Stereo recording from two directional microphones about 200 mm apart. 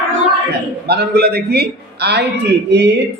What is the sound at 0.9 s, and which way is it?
A man's voice, 55° right (ahead or behind).